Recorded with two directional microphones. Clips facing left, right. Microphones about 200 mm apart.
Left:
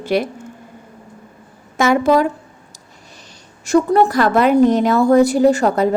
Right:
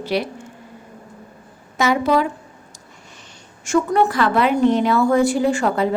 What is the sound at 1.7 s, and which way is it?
Speech, 50° left (ahead or behind).